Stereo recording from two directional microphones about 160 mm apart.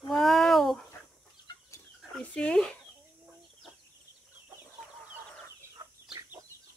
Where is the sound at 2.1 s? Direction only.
10° left (ahead or behind).